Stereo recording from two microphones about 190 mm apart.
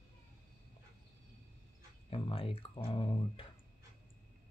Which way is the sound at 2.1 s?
30° left (ahead or behind).